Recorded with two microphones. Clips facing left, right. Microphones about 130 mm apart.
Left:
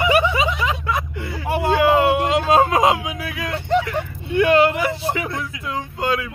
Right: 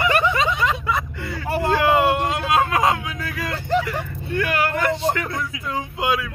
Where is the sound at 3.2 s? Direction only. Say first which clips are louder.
Left 1 dB; centre (ahead or behind).